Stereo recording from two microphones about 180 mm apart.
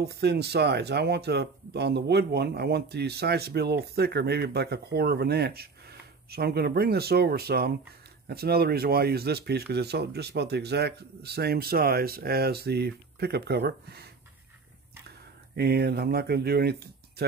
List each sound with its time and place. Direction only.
0.0 s speech: 65° right (ahead or behind)